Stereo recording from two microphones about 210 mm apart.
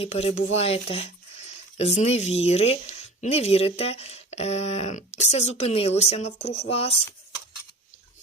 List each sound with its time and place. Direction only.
0.0 s speech: 30° left (ahead or behind)